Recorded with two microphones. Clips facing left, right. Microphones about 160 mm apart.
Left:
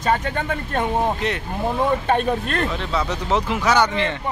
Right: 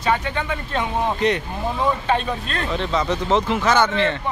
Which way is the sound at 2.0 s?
55° left (ahead or behind).